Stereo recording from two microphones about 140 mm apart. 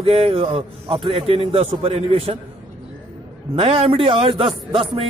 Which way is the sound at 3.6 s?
40° right (ahead or behind).